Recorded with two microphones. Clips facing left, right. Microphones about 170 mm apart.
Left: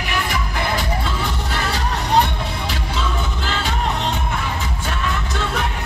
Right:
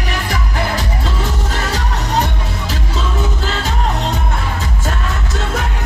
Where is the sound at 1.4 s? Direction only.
40° right (ahead or behind).